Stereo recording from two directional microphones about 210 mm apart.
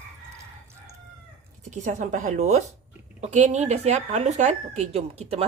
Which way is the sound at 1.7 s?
35° right (ahead or behind).